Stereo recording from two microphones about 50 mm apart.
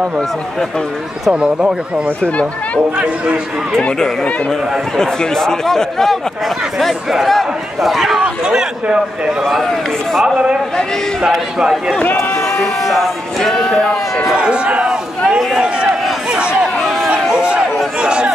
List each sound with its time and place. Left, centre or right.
1.3 s a man's voice: centre
2.2 s speech: left
4.0 s a man's voice: centre
8.2 s a man's voice: centre
9.4 s a man's voice: centre
10.2 s a man's voice: centre
12.8 s speech: centre
14.3 s run: right
17.3 s a sound: centre
18.0 s chatter: centre